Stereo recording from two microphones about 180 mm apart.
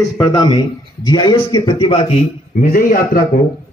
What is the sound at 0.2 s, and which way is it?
A man's voice, 25° left (ahead or behind).